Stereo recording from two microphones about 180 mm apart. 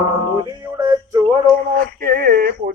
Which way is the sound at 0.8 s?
20° right (ahead or behind).